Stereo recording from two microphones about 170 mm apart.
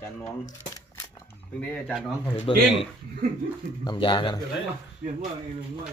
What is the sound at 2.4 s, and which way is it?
Speech, 30° left (ahead or behind).